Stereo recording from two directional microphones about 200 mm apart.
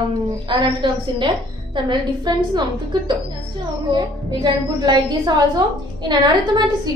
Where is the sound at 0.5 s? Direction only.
25° right (ahead or behind).